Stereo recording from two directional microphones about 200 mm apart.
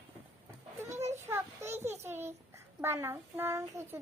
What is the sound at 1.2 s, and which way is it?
Speech, 10° right (ahead or behind).